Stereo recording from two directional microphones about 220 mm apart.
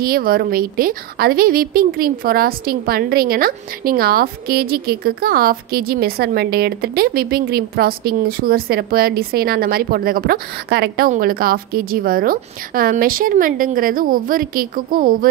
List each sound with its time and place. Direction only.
0.0 s a woman's voice: 40° right (ahead or behind)